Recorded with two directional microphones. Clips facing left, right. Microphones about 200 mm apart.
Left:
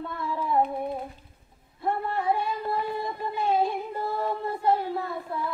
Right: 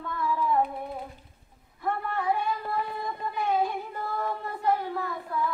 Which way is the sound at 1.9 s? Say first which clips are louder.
Left 2 dB; 25° left (ahead or behind).